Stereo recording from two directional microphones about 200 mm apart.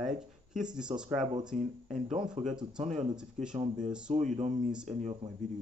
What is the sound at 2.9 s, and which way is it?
Speech, centre (ahead or behind).